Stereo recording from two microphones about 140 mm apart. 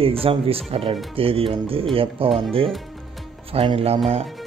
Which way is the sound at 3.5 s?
45° right (ahead or behind).